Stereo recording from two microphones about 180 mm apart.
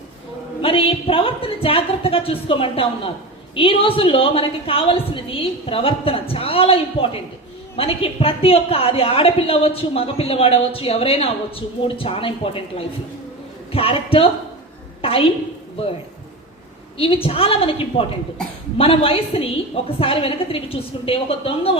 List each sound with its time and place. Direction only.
0.6 s a woman's voice: 30° left (ahead or behind)
17.0 s a woman's voice: 30° left (ahead or behind)